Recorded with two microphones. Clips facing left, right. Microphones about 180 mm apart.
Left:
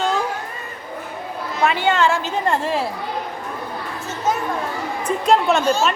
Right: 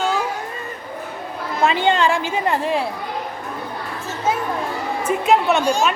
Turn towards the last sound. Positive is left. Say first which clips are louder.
# even
turn(degrees=-15)  # may be behind; listen again after turning